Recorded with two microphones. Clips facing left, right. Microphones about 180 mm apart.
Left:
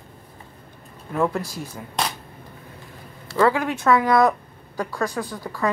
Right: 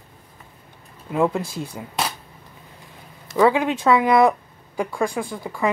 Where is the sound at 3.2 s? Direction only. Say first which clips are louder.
Right 2 dB; 15° right (ahead or behind).